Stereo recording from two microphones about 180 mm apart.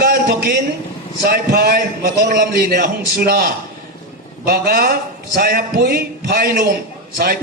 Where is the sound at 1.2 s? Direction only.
60° right (ahead or behind).